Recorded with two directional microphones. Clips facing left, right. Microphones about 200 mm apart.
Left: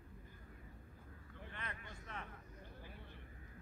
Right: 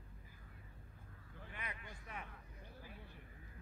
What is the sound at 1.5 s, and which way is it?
Vehicle, 10° right (ahead or behind).